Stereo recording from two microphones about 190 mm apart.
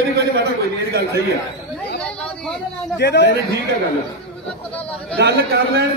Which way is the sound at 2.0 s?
5° left (ahead or behind).